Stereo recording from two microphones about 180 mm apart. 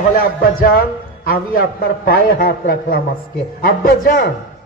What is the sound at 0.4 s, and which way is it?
A man's voice, 55° left (ahead or behind).